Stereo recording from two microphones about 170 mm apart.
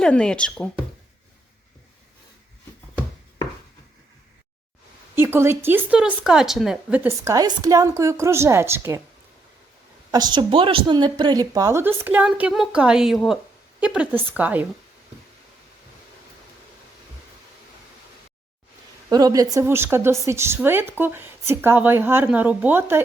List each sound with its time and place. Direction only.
0.0 s speech: 5° left (ahead or behind)
5.1 s speech: 15° right (ahead or behind)
7.3 s speech: 20° right (ahead or behind)
10.1 s speech: 25° right (ahead or behind)
19.0 s speech: 25° right (ahead or behind)